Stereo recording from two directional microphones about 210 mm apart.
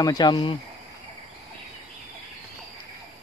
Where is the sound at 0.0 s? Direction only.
20° left (ahead or behind).